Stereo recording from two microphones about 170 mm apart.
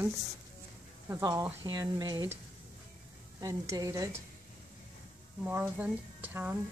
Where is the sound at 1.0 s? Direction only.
15° right (ahead or behind).